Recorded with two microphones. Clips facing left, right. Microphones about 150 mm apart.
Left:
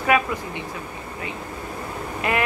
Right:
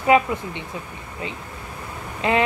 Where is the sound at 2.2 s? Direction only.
25° right (ahead or behind).